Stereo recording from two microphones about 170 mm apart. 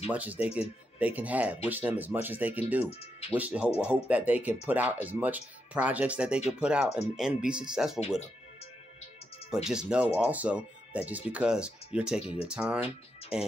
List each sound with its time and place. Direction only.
0.0 s speech: 10° right (ahead or behind)
2.9 s speech: 35° left (ahead or behind)
3.3 s speech: 10° right (ahead or behind)
9.7 s speech: 5° right (ahead or behind)
12.2 s speech: 35° left (ahead or behind)
12.4 s speech: 5° right (ahead or behind)